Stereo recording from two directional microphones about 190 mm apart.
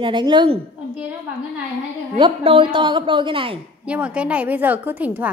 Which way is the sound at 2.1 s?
25° right (ahead or behind).